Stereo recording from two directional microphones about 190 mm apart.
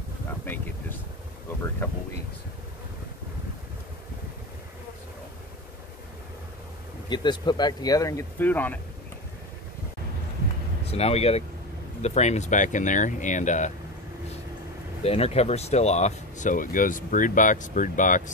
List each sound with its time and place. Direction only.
1.8 s speech: 15° left (ahead or behind)
7.1 s speech: 25° left (ahead or behind)
10.9 s speech: 30° left (ahead or behind)
15.0 s speech: 30° left (ahead or behind)